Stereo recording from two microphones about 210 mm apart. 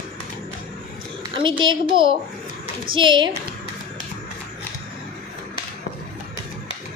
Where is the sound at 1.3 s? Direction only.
25° right (ahead or behind).